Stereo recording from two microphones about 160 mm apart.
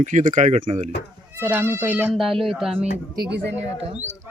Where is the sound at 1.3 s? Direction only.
10° right (ahead or behind).